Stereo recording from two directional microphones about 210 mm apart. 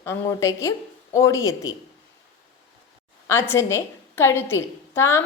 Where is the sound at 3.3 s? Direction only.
10° left (ahead or behind).